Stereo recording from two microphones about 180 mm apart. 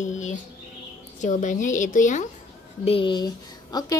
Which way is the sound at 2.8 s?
30° left (ahead or behind).